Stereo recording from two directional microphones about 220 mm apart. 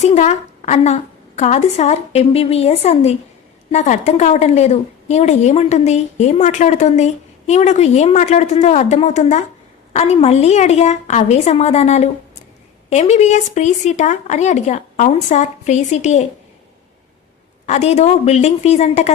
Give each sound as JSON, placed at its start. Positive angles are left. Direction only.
{"t": 0.0, "sound": "a woman's voice", "side_deg": 30}
{"t": 17.7, "sound": "a woman's voice", "side_deg": 30}